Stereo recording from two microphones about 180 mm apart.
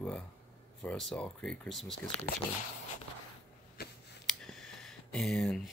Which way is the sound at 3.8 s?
60° left (ahead or behind).